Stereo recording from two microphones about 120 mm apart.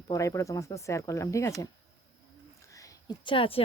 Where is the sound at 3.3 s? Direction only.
50° left (ahead or behind).